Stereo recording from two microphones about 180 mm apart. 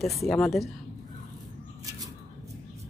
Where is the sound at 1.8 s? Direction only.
20° right (ahead or behind).